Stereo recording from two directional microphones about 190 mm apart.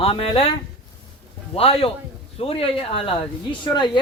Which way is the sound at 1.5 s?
30° left (ahead or behind).